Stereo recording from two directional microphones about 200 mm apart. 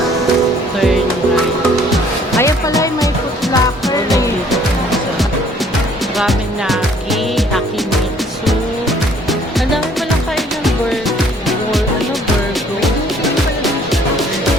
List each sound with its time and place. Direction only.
2.4 s music: 15° left (ahead or behind)
6.1 s music: centre (ahead or behind)